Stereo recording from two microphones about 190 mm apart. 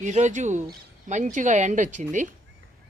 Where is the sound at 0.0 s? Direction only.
40° right (ahead or behind).